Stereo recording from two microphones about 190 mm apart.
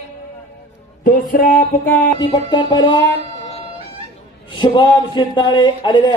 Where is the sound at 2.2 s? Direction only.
25° left (ahead or behind).